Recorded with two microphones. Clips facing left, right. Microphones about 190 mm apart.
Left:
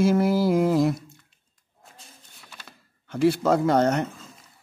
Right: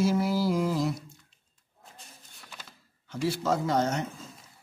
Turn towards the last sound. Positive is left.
turn(degrees=60)  # may be behind; listen again after turning